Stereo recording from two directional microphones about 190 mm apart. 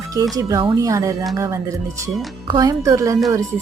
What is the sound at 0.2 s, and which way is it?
Speech, 20° right (ahead or behind).